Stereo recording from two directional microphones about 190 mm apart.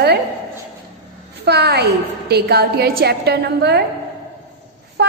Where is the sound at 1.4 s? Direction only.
60° right (ahead or behind).